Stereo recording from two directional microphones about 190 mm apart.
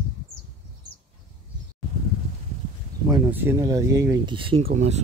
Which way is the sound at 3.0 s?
20° right (ahead or behind).